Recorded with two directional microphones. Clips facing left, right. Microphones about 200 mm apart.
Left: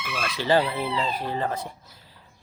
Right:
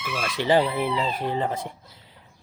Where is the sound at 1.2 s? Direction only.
20° right (ahead or behind).